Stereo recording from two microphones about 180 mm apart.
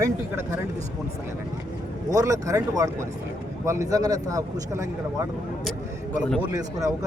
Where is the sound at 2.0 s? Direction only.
20° right (ahead or behind).